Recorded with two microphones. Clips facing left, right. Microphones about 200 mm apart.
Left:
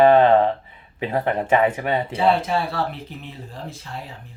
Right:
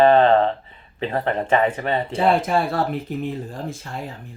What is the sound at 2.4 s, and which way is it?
Speech, 50° right (ahead or behind).